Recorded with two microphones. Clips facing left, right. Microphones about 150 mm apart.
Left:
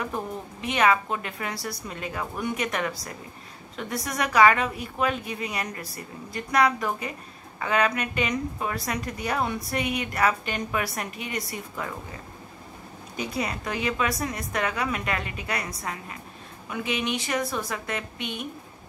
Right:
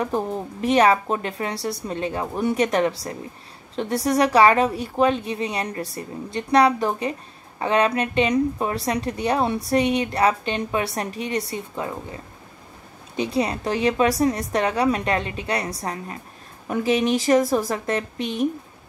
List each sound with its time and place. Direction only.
0.0 s a woman's voice: 35° right (ahead or behind)